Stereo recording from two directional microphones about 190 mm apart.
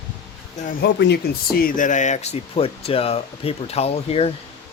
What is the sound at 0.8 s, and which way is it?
Speech, 60° left (ahead or behind).